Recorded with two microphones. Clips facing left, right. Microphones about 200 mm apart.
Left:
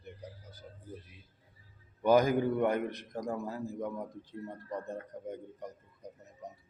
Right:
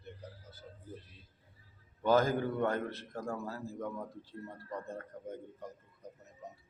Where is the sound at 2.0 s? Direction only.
15° left (ahead or behind).